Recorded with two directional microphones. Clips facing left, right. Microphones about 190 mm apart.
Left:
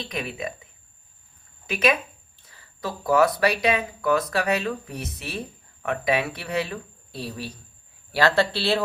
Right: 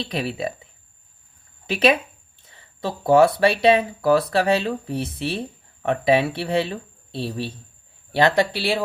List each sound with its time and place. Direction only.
0.0 s speech: 35° right (ahead or behind); by 8.8 s 15° right (ahead or behind)